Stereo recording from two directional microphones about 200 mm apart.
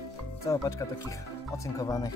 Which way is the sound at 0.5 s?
15° left (ahead or behind).